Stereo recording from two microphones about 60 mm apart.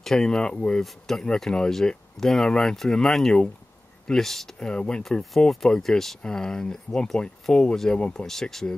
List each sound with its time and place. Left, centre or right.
0.0 s speech: centre